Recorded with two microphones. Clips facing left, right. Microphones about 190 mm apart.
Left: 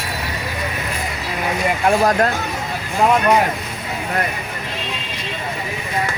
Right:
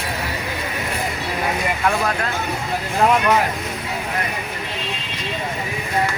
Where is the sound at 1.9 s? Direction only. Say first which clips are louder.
Left 7 dB; 40° left (ahead or behind).